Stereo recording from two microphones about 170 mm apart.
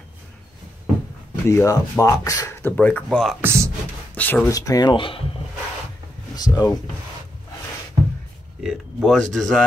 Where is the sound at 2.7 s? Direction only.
10° left (ahead or behind); by 5.3 s 30° left (ahead or behind).